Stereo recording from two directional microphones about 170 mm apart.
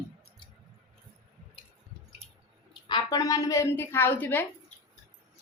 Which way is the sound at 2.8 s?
25° left (ahead or behind).